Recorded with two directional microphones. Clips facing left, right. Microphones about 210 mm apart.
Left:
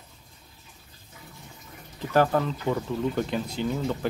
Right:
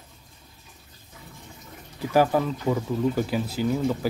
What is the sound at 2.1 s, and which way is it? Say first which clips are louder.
Speech: right 1 dB; 10° right (ahead or behind).